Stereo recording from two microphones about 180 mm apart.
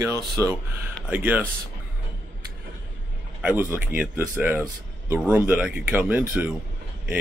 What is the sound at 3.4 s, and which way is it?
Speech, 5° right (ahead or behind).